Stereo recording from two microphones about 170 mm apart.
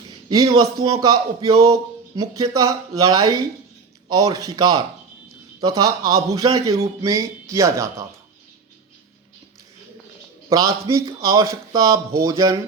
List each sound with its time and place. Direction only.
0.3 s speech: 25° right (ahead or behind)
10.5 s speech: 20° right (ahead or behind)